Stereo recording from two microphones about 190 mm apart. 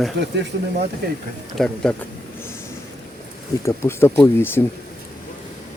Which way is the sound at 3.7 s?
15° left (ahead or behind).